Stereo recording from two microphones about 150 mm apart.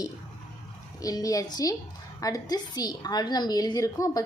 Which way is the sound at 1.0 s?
25° left (ahead or behind).